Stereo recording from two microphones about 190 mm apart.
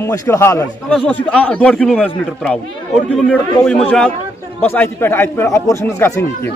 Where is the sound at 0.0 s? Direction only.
15° left (ahead or behind).